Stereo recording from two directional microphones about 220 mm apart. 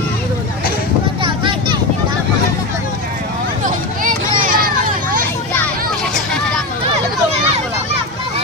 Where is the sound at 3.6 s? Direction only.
40° right (ahead or behind).